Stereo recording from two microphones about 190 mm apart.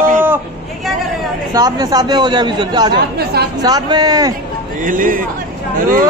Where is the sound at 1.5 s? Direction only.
20° right (ahead or behind).